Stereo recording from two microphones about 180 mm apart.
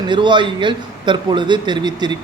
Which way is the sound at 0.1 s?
25° right (ahead or behind).